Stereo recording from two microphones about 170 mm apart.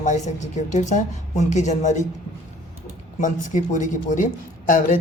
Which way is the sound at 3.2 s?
50° left (ahead or behind).